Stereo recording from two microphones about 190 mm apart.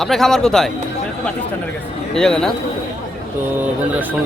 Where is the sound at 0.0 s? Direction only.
Centre (ahead or behind).